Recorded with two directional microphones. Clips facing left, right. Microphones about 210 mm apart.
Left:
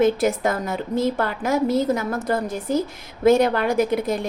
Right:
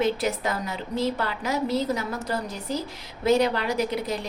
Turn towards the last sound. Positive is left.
turn(degrees=50)  # may be behind; listen again after turning